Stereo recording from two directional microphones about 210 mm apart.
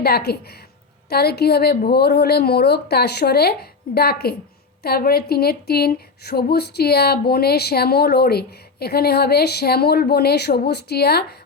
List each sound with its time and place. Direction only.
0.0 s speech: 50° left (ahead or behind)